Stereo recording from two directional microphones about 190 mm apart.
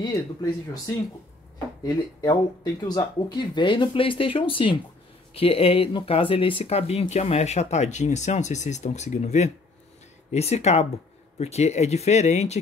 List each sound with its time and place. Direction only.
0.0 s speech: 20° left (ahead or behind); by 12.5 s 35° left (ahead or behind)